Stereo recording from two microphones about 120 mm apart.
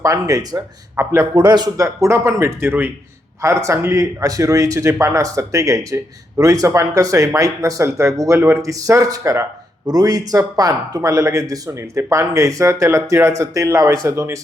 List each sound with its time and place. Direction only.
0.0 s speech: 25° right (ahead or behind)